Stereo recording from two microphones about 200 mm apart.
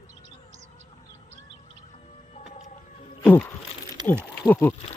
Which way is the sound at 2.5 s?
35° left (ahead or behind).